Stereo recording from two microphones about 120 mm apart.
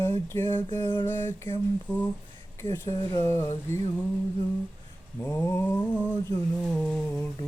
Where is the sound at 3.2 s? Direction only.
25° left (ahead or behind).